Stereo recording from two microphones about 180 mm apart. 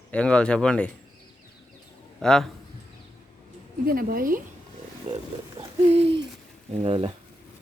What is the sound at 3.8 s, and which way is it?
Speech, 55° right (ahead or behind).